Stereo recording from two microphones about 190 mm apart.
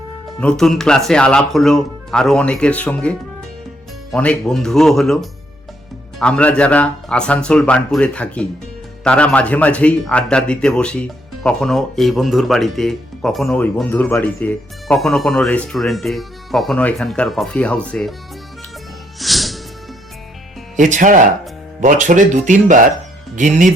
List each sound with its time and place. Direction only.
0.3 s speech: 5° left (ahead or behind)
19.2 s music: centre (ahead or behind)
20.7 s speech: 40° right (ahead or behind)